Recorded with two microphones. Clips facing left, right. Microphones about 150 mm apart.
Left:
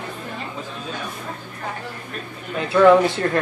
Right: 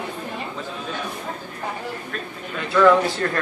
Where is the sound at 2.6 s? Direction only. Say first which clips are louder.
Left 3 dB; 25° left (ahead or behind).